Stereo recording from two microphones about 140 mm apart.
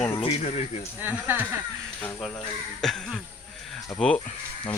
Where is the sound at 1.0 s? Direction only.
15° right (ahead or behind).